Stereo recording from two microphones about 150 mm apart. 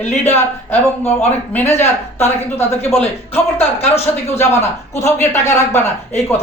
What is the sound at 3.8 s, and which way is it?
Speech, 45° left (ahead or behind).